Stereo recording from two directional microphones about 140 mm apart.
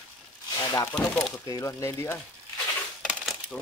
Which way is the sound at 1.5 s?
20° left (ahead or behind).